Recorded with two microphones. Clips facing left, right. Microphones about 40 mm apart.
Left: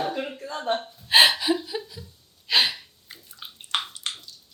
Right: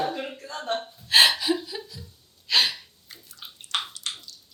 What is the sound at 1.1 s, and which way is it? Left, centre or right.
Gasp, centre.